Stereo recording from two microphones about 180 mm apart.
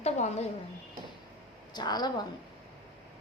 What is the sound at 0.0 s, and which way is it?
Speech, 35° left (ahead or behind).